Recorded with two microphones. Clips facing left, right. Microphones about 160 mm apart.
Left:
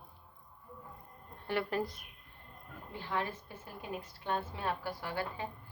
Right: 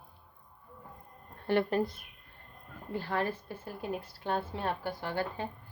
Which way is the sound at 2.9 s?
45° right (ahead or behind).